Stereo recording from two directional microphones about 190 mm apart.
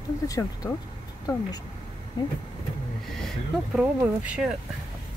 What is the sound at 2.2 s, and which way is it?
Speech, 20° left (ahead or behind).